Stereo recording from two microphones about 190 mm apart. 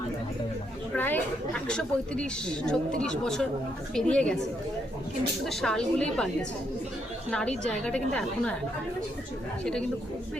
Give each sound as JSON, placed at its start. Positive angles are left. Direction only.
{"t": 0.9, "sound": "a woman's voice", "side_deg": 10}
{"t": 5.5, "sound": "a woman's voice", "side_deg": 5}